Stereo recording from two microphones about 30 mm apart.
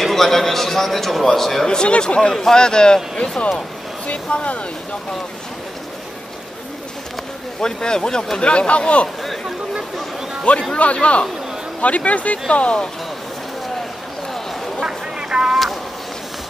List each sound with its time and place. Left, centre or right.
0.0 s a man's voice: centre
2.0 s a man's voice: left
4.1 s speech: left
7.6 s a man's voice: left
8.4 s speech: left
10.7 s speech: left
12.4 s speech: left
14.9 s vehicle: right